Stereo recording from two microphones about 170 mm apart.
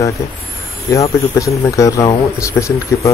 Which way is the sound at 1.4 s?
20° left (ahead or behind).